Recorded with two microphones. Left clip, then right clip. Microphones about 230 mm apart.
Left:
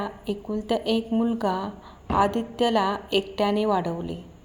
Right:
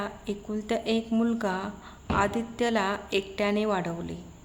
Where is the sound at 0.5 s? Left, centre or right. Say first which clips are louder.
Left 3 dB; centre.